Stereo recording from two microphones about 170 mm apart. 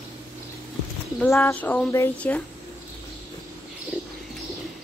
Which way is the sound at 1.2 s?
15° left (ahead or behind).